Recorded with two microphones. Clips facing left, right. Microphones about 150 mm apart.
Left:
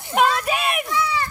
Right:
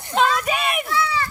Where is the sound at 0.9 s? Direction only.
15° left (ahead or behind).